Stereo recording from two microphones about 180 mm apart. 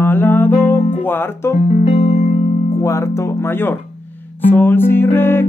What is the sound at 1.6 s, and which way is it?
Music, 40° left (ahead or behind).